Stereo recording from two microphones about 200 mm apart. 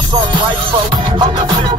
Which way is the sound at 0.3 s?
25° right (ahead or behind).